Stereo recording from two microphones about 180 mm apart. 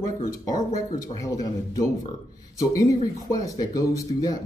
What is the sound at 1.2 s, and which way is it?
Speech, 20° left (ahead or behind).